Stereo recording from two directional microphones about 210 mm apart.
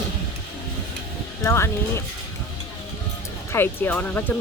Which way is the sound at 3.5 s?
10° left (ahead or behind).